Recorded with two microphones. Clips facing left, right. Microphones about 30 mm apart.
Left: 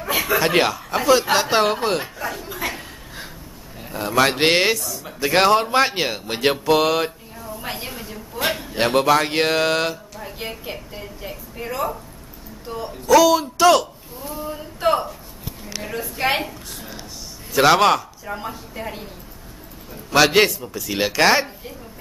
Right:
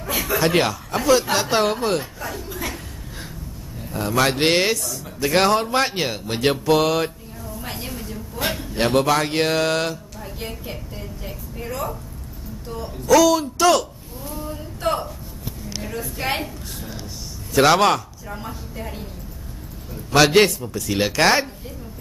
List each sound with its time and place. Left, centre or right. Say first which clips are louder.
0.0 s speech: left 2 dB; centre
2.1 s chuckle: left 2 dB; centre
3.9 s speech: left 2 dB; centre
7.5 s a sound: left 2 dB; centre
8.4 s a man's voice: left 2 dB; centre
14.5 s a sound: left 4 dB; centre
15.8 s a woman's voice: left 4 dB; centre
17.6 s speech: left 1 dB; centre
18.2 s speech: left 3 dB; centre
20.1 s speech: even; centre